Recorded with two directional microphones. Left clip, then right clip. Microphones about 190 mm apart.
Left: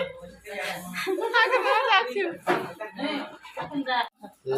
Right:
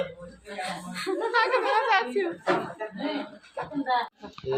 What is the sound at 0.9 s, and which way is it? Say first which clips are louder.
A woman's voice: left 2 dB; centre (ahead or behind).